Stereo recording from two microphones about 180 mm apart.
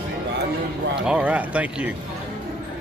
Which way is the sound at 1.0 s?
5° right (ahead or behind).